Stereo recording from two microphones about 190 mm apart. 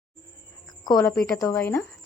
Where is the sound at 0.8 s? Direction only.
20° left (ahead or behind).